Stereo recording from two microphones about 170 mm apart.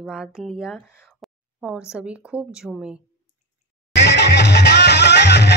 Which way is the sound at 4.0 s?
90° left.